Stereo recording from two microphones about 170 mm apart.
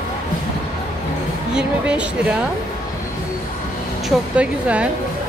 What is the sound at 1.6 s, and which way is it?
Speech, 5° right (ahead or behind).